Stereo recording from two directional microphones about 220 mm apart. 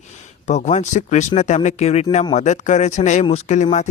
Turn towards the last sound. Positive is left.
turn(degrees=30)  # may be behind; listen again after turning